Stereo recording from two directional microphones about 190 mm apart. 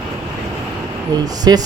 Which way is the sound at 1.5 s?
20° right (ahead or behind).